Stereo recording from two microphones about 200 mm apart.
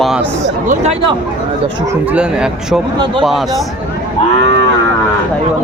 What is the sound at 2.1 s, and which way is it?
A man's voice, 5° right (ahead or behind).